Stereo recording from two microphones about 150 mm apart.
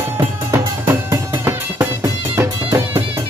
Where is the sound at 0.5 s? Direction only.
15° right (ahead or behind).